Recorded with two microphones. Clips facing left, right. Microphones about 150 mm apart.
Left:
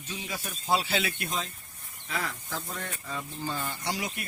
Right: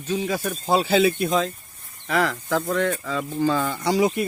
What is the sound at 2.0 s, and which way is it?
Speech, 85° right.